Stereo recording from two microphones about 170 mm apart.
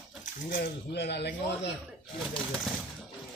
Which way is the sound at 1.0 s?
80° left.